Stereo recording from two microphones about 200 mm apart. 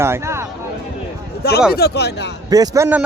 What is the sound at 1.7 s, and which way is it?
Speech, 55° left (ahead or behind).